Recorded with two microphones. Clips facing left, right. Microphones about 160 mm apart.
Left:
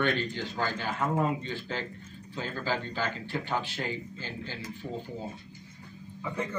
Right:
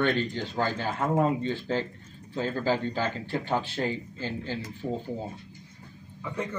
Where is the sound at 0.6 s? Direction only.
30° right (ahead or behind).